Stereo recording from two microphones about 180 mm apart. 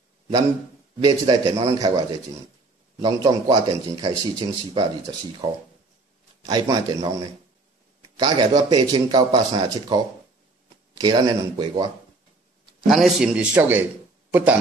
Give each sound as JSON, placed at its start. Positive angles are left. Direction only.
{"t": 1.0, "sound": "speech", "side_deg": -20}
{"t": 12.8, "sound": "a man's voice", "side_deg": 0}